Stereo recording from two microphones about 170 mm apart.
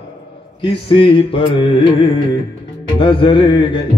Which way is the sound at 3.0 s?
30° left (ahead or behind).